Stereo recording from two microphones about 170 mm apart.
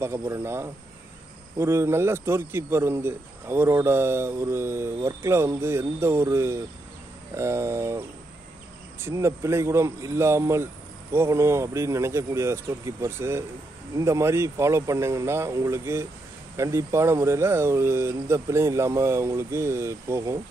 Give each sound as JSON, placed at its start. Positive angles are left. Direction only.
{"t": 0.0, "sound": "a man's voice", "side_deg": -15}
{"t": 9.0, "sound": "a man's voice", "side_deg": -15}